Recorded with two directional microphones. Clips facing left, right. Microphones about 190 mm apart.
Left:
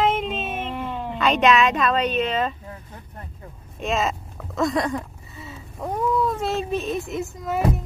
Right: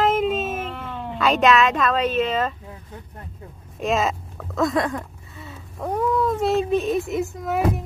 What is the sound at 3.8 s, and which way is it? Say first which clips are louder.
A woman's voice: right 2 dB; centre (ahead or behind).